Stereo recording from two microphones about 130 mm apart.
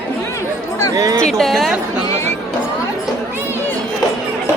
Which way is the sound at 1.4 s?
Centre (ahead or behind).